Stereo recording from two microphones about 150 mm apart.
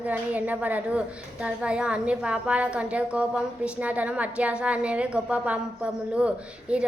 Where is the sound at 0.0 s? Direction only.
10° right (ahead or behind).